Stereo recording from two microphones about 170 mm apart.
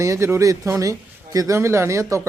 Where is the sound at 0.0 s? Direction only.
15° right (ahead or behind).